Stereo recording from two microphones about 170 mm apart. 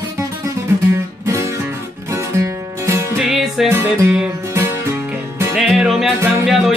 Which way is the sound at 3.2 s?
Centre (ahead or behind).